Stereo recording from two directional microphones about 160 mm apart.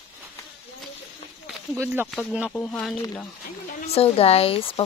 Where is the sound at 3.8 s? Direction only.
40° left (ahead or behind).